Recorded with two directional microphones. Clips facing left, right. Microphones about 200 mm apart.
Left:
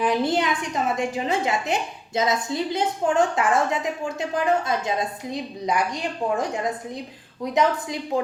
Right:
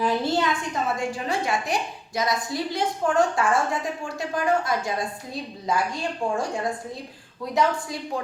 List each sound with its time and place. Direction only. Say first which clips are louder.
0.0 s a woman's voice: left 1 dB; 20° left (ahead or behind)
7.5 s a woman's voice: left 2 dB; 20° left (ahead or behind)